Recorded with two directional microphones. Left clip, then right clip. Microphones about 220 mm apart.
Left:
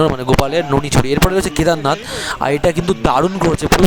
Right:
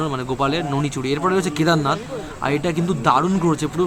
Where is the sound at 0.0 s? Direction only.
55° left (ahead or behind).